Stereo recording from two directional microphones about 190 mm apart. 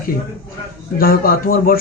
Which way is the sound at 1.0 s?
50° left (ahead or behind).